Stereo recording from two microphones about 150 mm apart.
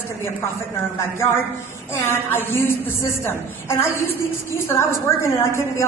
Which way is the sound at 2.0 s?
15° left (ahead or behind).